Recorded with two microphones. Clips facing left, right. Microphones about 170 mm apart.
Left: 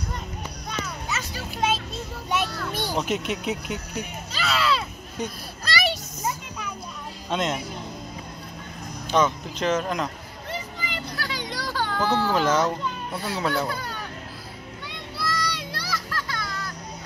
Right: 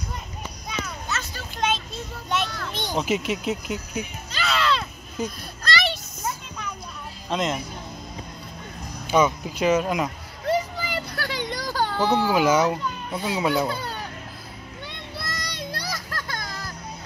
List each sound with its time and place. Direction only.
0.7 s a sound: 5° right (ahead or behind)
1.0 s a sound: 10° left (ahead or behind)
2.2 s a child's voice: 5° left (ahead or behind)
5.6 s children playing: 10° left (ahead or behind)
7.2 s a child's voice: centre (ahead or behind)
9.1 s a child's voice: 10° right (ahead or behind)
11.2 s a sound: 55° right (ahead or behind); by 12.0 s 35° right (ahead or behind)
12.0 s a child's voice: 15° right (ahead or behind)
15.2 s child singing: 20° right (ahead or behind)
15.8 s children playing: 45° right (ahead or behind)